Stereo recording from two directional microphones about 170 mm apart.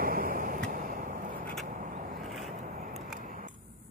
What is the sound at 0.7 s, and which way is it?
Vehicle, 55° right (ahead or behind).